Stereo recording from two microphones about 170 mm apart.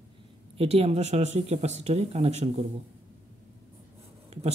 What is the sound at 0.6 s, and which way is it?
Speech, 35° right (ahead or behind).